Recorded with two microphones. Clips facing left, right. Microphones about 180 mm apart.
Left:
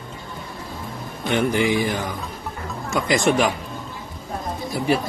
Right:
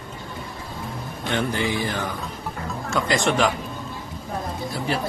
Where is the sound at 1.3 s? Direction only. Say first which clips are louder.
Left 5 dB; 15° left (ahead or behind).